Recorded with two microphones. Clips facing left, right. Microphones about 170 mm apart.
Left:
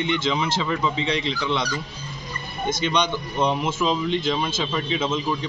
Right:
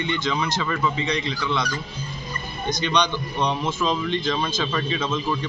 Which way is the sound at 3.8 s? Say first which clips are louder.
Left 1 dB; 20° left (ahead or behind).